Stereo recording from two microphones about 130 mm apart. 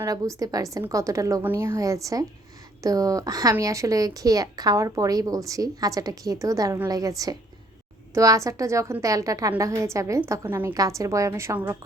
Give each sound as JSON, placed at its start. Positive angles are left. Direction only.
{"t": 0.0, "sound": "a woman's voice", "side_deg": -25}